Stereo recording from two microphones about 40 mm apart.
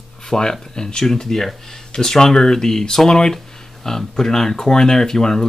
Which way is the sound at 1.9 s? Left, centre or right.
Centre.